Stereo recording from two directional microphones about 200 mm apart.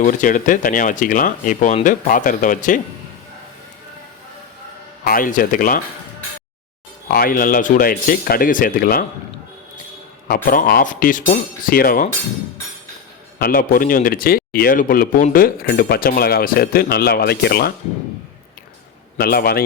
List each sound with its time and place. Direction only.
0.0 s speech: 40° left (ahead or behind)
5.0 s speech: 45° left (ahead or behind)
7.1 s speech: 45° left (ahead or behind)
10.2 s speech: 45° left (ahead or behind)
13.4 s speech: 45° left (ahead or behind)
19.1 s speech: 50° left (ahead or behind)